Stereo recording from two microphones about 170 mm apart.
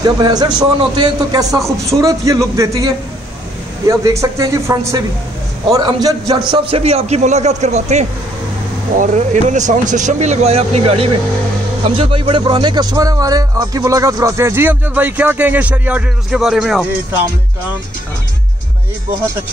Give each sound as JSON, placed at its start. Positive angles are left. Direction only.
{"t": 0.0, "sound": "a man's voice", "side_deg": -25}
{"t": 6.5, "sound": "a man's voice", "side_deg": -35}